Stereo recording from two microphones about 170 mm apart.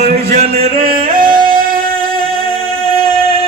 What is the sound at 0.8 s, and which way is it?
Music, 55° right (ahead or behind).